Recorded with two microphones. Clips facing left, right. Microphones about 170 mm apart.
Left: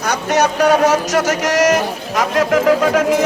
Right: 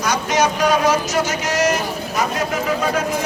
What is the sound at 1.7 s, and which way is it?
A man's voice, 90° left.